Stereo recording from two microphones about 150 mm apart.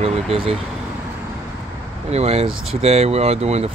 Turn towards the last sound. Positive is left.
turn(degrees=-45)  # may be behind; listen again after turning